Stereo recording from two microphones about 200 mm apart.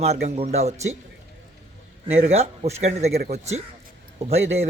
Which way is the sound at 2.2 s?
30° right (ahead or behind).